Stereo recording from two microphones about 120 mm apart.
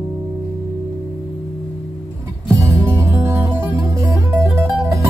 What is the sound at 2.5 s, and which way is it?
Music, 25° right (ahead or behind).